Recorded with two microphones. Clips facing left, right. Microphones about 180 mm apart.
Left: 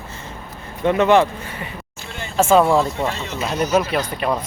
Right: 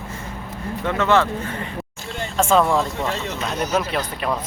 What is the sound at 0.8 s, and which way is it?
Speech, 15° left (ahead or behind).